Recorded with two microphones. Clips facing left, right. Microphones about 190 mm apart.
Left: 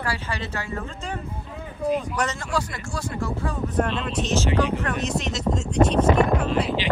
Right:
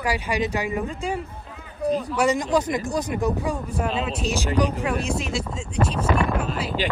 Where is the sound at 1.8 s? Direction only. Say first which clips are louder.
Right 1 dB; 70° right (ahead or behind).